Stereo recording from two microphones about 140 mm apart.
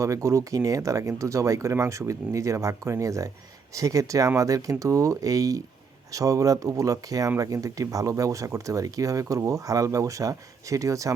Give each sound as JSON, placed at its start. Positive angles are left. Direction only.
{"t": 0.0, "sound": "speech", "side_deg": -20}